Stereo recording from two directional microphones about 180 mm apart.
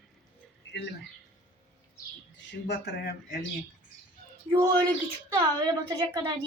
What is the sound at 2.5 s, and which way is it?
Speech, 65° left (ahead or behind).